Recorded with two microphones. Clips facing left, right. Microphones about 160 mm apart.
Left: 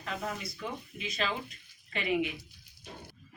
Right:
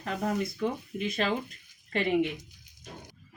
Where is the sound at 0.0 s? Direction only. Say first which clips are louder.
Right 7 dB; 55° right (ahead or behind).